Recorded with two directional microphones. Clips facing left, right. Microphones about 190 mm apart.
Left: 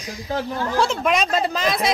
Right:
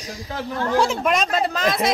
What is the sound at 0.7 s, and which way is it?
Speech, 15° right (ahead or behind).